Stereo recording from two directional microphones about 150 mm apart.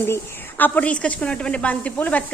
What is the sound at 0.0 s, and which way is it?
A woman's voice, 15° left (ahead or behind).